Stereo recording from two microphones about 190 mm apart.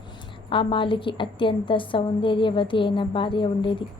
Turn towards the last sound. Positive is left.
turn(degrees=25)  # may be behind; listen again after turning